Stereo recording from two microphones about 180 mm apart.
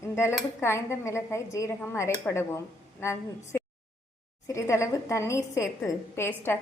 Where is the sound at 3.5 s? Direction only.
15° left (ahead or behind).